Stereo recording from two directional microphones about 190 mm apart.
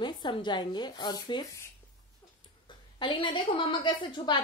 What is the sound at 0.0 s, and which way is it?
A woman's voice, 25° left (ahead or behind).